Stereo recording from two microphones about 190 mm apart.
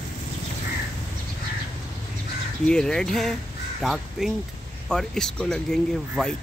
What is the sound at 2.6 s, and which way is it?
Speech, 5° left (ahead or behind).